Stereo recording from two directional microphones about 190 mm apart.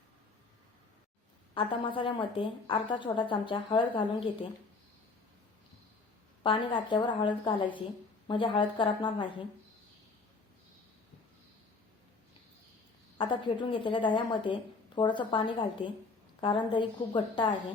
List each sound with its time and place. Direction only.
1.5 s a woman's voice: 25° left (ahead or behind)
6.4 s a woman's voice: 25° left (ahead or behind)
13.1 s a woman's voice: 25° left (ahead or behind)